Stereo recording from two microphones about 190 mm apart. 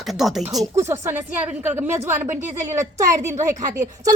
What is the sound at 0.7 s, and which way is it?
A woman's voice, 15° right (ahead or behind).